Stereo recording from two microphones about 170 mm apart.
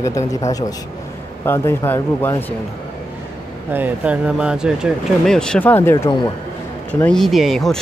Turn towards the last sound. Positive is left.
turn(degrees=0)  # may be behind; listen again after turning